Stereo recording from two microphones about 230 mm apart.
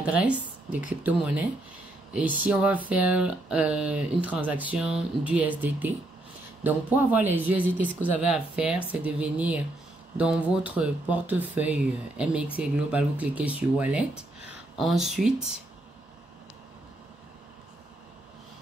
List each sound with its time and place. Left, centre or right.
0.0 s speech: centre
2.1 s speech: centre